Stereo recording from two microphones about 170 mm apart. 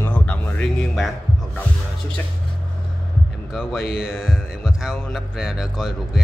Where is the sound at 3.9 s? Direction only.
Centre (ahead or behind).